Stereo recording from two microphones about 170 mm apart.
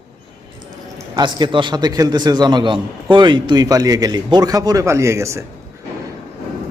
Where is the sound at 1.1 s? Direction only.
25° right (ahead or behind).